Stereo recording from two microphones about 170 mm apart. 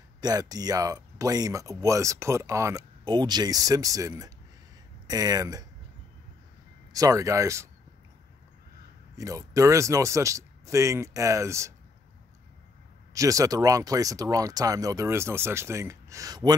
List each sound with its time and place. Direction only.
0.2 s speech: 20° right (ahead or behind)
6.9 s speech: 20° right (ahead or behind)
9.1 s speech: 20° right (ahead or behind)
13.1 s speech: 20° right (ahead or behind)